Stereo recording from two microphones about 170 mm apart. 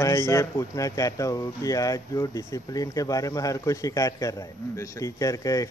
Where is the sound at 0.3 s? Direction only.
15° left (ahead or behind).